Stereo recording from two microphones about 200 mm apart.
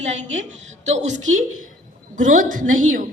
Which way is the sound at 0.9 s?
35° right (ahead or behind).